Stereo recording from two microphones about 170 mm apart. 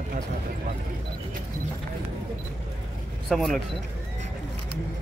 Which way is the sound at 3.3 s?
Centre (ahead or behind).